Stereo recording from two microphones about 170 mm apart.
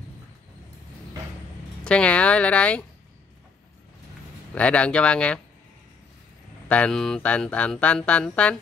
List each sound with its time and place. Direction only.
1.9 s speech: 5° left (ahead or behind)
4.6 s speech: 5° left (ahead or behind)
6.7 s speech: 5° left (ahead or behind)